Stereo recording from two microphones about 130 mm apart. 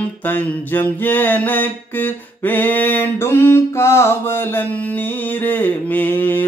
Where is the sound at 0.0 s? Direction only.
15° left (ahead or behind).